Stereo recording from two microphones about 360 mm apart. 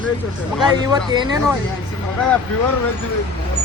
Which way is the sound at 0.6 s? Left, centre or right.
Centre.